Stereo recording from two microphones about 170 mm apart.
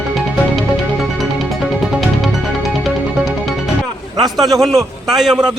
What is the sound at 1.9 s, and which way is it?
Music, centre (ahead or behind).